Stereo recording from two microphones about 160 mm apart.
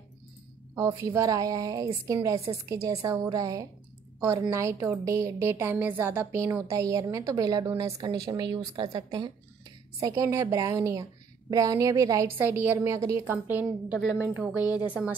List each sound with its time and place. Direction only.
0.7 s a woman's voice: 20° right (ahead or behind)